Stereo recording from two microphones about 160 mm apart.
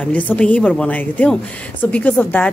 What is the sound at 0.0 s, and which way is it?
Speech, 10° left (ahead or behind).